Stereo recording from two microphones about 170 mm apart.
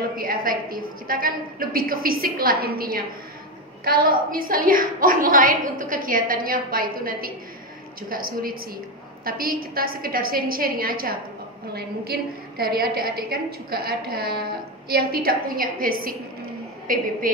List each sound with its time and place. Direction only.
0.0 s a woman's voice: 60° right (ahead or behind)